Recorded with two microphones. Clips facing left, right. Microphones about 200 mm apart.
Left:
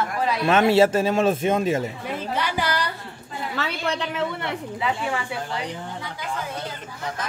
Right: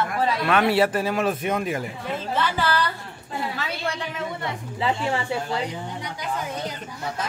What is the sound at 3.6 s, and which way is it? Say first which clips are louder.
Speech: left 3 dB; 70° left (ahead or behind).